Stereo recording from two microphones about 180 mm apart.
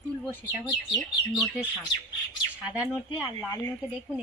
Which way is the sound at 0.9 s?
Centre (ahead or behind).